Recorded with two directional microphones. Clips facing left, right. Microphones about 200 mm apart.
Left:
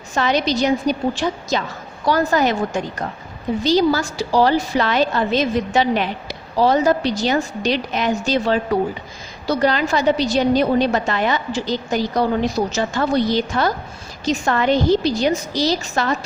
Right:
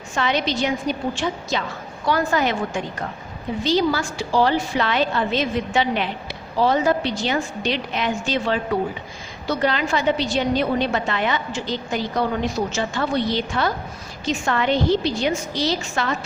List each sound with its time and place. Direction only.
0.1 s a woman's voice: 40° left (ahead or behind)